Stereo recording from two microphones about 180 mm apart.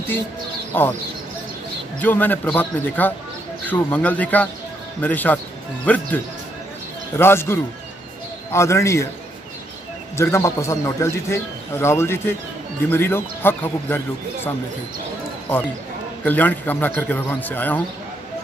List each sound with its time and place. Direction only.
0.7 s speech: 10° left (ahead or behind)
2.0 s speech: 10° left (ahead or behind)
7.2 s speech: 15° left (ahead or behind)
10.1 s speech: 15° left (ahead or behind)
16.3 s speech: 10° left (ahead or behind)